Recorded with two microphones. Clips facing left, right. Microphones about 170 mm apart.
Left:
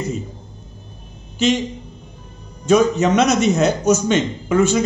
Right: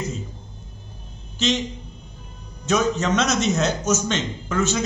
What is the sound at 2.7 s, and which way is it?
Speech, 15° left (ahead or behind).